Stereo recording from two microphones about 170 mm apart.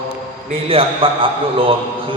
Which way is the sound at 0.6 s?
35° right (ahead or behind).